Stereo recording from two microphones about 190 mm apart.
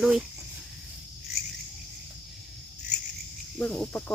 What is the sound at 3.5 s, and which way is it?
Speech, 5° left (ahead or behind).